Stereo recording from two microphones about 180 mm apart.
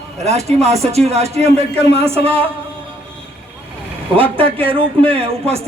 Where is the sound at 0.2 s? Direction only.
35° right (ahead or behind).